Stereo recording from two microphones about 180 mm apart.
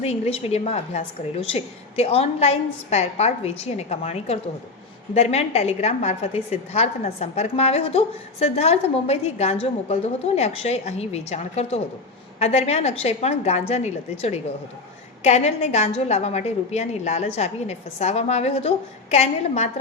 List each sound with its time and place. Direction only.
0.0 s a woman's voice: 35° left (ahead or behind)